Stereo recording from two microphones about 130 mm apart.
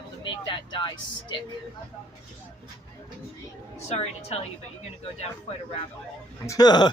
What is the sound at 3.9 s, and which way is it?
Speech, 55° left (ahead or behind).